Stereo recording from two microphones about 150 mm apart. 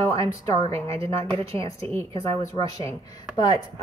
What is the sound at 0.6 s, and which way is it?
Speech, 45° right (ahead or behind).